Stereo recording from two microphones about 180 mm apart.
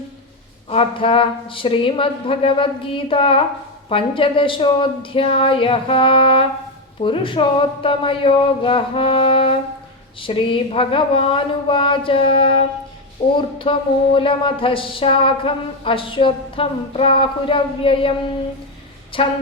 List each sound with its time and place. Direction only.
0.7 s speech: 30° left (ahead or behind)
19.1 s speech: 30° left (ahead or behind)